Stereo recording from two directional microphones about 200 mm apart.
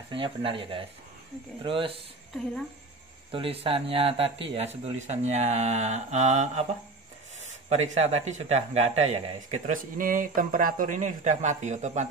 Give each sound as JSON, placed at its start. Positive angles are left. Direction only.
{"t": 0.1, "sound": "speech", "side_deg": -25}
{"t": 3.3, "sound": "speech", "side_deg": -25}